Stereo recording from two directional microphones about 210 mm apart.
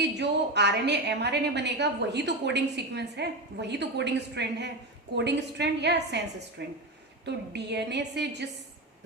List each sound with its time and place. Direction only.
0.0 s a woman's voice: 55° right (ahead or behind)